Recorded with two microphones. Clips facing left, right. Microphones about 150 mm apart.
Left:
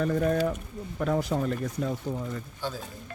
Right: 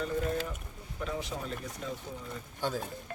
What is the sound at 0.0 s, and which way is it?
Speech, 55° left (ahead or behind).